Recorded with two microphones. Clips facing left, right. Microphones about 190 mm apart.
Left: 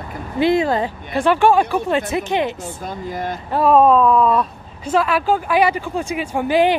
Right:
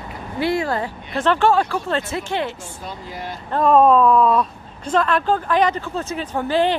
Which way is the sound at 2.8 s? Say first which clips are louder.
Left 6 dB; 50° left (ahead or behind).